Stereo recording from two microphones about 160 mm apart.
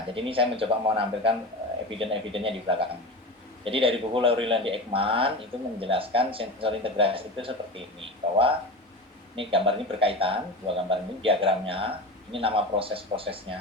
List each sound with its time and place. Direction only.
0.1 s speech: 35° right (ahead or behind)